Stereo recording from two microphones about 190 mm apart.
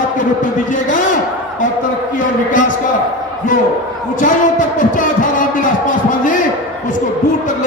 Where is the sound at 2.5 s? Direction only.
45° left (ahead or behind).